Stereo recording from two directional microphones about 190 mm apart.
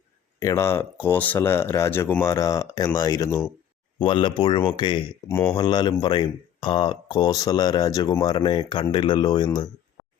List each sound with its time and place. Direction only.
0.3 s speech: 15° left (ahead or behind)
4.0 s speech: 25° left (ahead or behind)
5.3 s speech: 10° left (ahead or behind)
5.5 s speech: 25° left (ahead or behind)